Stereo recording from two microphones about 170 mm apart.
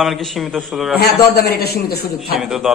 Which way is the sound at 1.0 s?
65° left (ahead or behind).